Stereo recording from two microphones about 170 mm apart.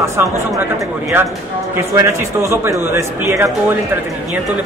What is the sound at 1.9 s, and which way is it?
A man's voice, 20° right (ahead or behind).